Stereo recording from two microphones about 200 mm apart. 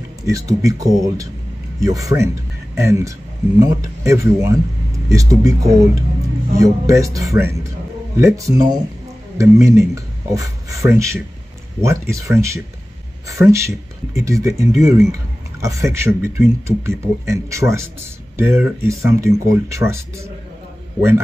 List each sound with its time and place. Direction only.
0.3 s speech: 15° right (ahead or behind)